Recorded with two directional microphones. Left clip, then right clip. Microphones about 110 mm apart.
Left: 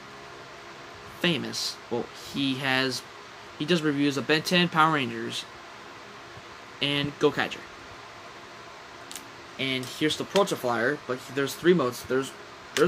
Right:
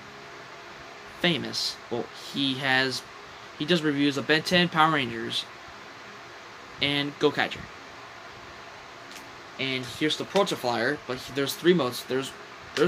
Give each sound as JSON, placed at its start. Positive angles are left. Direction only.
{"t": 1.2, "sound": "speech", "side_deg": 5}
{"t": 6.8, "sound": "speech", "side_deg": 0}
{"t": 9.6, "sound": "speech", "side_deg": 5}